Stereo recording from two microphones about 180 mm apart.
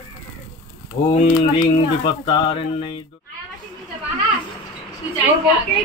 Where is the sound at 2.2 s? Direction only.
30° left (ahead or behind).